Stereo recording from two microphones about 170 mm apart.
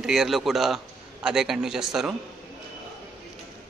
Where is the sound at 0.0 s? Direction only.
Centre (ahead or behind).